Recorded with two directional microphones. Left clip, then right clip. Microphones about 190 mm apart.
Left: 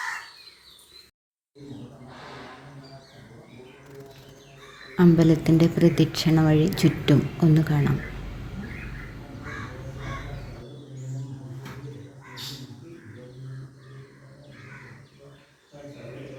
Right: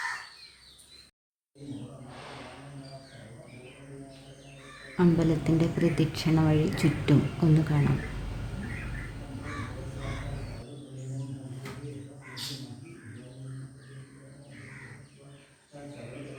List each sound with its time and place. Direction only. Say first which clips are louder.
4.9 s a woman's voice: left 6 dB; 20° left (ahead or behind)